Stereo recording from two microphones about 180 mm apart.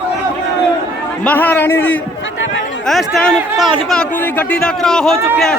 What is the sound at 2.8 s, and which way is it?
A man's voice, centre (ahead or behind).